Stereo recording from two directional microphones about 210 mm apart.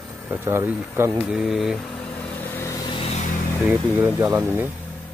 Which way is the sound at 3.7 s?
10° right (ahead or behind).